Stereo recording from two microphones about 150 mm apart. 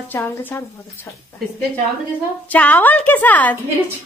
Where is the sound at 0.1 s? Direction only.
15° left (ahead or behind).